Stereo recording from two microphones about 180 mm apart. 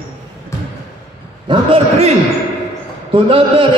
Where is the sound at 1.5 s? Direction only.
35° right (ahead or behind).